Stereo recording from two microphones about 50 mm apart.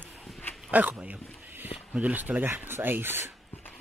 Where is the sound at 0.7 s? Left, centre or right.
Right.